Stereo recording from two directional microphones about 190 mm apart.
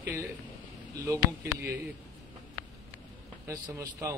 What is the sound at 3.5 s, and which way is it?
Speech, 15° right (ahead or behind).